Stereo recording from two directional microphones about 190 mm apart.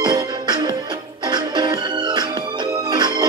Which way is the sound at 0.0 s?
25° right (ahead or behind).